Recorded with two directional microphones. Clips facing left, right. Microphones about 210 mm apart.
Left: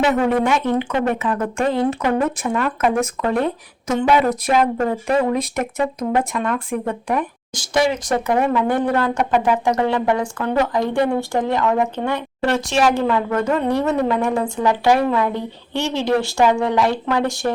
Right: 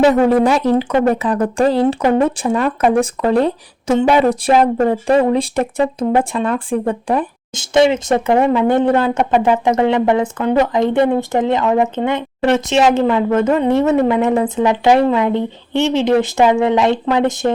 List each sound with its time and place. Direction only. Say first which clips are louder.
0.0 s speech: right 6 dB; 35° right (ahead or behind); by 17.5 s 20° right (ahead or behind)